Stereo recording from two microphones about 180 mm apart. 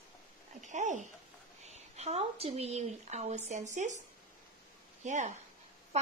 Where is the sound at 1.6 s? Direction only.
35° right (ahead or behind).